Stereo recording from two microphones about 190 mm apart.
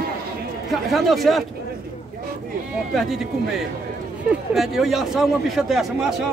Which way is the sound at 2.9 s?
Centre (ahead or behind).